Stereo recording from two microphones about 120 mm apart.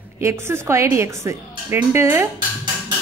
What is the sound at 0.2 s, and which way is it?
A woman's voice, 25° right (ahead or behind).